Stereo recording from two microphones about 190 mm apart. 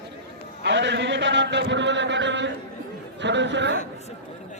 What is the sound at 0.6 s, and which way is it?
A man's voice, 65° right (ahead or behind).